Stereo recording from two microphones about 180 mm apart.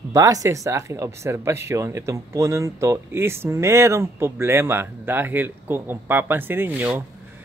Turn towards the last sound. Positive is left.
turn(degrees=-5)  # may be behind; listen again after turning